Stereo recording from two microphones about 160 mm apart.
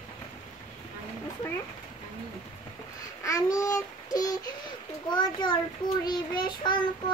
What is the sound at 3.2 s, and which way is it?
Child singing, 20° left (ahead or behind).